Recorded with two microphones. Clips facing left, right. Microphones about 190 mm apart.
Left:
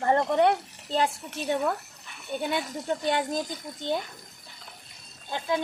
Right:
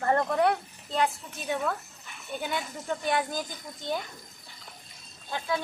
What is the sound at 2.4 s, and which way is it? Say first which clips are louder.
Speech: left 4 dB; 30° left (ahead or behind).